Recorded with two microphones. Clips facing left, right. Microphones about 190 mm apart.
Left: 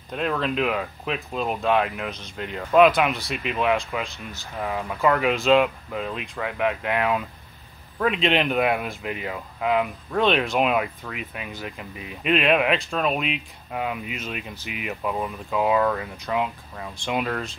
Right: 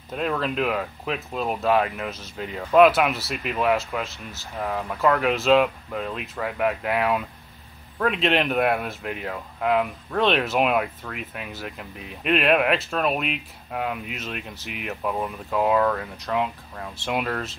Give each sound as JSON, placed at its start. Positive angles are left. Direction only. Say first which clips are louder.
{"t": 0.1, "sound": "speech", "louder": "even", "side_deg": 0}